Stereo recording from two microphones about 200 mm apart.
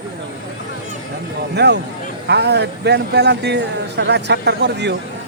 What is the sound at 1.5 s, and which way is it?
Speech, 55° right (ahead or behind).